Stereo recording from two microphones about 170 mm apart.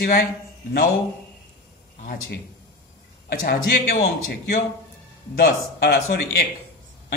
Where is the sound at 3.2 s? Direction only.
65° left (ahead or behind).